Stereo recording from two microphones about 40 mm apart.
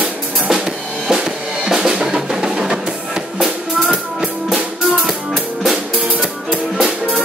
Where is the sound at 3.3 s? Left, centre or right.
Centre.